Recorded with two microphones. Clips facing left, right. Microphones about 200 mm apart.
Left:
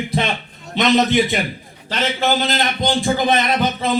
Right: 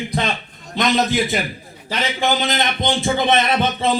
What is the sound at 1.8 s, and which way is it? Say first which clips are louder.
A man's voice: left 1 dB; 10° right (ahead or behind).